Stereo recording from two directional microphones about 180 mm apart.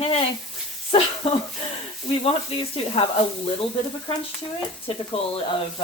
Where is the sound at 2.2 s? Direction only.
30° left (ahead or behind).